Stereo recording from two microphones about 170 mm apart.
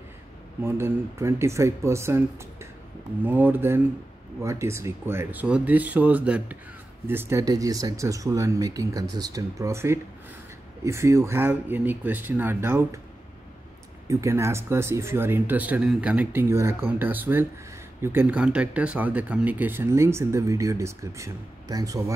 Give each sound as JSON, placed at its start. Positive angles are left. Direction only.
{"t": 0.7, "sound": "speech", "side_deg": -15}
{"t": 14.0, "sound": "speech", "side_deg": -15}